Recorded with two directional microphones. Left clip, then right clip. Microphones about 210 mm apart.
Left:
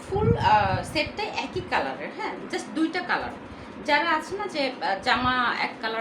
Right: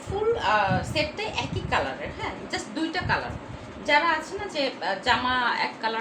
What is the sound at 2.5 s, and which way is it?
Speech, 15° left (ahead or behind).